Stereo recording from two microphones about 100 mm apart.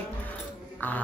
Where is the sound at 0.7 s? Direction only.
15° left (ahead or behind).